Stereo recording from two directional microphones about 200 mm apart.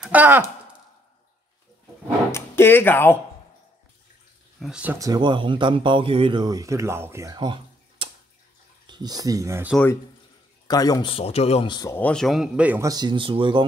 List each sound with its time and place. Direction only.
0.0 s speech: 10° right (ahead or behind)
2.3 s speech: 10° left (ahead or behind)
4.6 s speech: 5° right (ahead or behind)
4.9 s speech: 20° right (ahead or behind)
10.7 s speech: 20° left (ahead or behind); by 13.7 s 25° right (ahead or behind)